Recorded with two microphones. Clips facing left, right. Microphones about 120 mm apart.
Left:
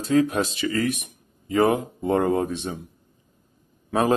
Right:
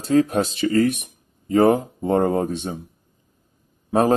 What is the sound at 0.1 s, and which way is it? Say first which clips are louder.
Speech: right 2 dB; 40° right (ahead or behind).